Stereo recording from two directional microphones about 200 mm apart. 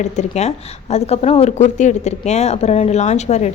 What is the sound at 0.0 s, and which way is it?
A woman's voice, 35° left (ahead or behind).